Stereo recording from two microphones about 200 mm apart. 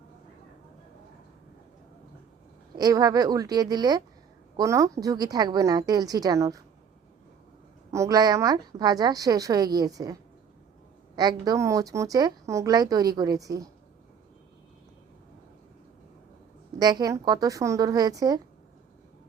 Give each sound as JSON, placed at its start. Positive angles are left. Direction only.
{"t": 2.7, "sound": "a woman's voice", "side_deg": -20}
{"t": 7.9, "sound": "a woman's voice", "side_deg": -15}
{"t": 16.7, "sound": "speech", "side_deg": -20}